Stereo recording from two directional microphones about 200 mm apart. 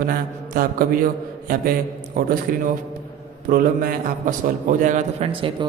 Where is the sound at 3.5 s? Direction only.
45° right (ahead or behind).